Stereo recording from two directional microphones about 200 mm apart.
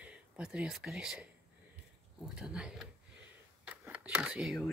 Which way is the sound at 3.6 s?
5° right (ahead or behind).